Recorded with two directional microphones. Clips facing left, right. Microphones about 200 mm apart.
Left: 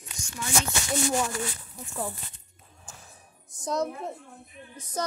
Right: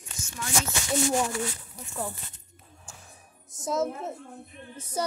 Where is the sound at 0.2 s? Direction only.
5° right (ahead or behind).